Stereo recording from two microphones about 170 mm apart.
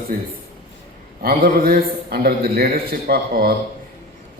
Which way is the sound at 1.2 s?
60° right (ahead or behind).